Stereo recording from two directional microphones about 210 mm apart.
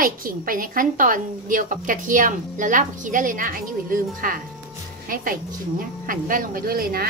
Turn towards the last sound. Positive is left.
turn(degrees=-45)  # may be behind; listen again after turning